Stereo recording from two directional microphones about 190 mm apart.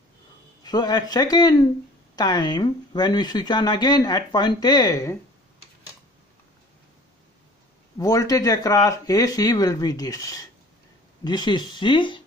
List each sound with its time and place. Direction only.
0.7 s speech: 20° left (ahead or behind)
8.0 s speech: 20° left (ahead or behind)